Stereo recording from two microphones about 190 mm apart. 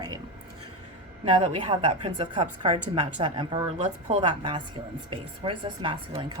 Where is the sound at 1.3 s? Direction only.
30° right (ahead or behind).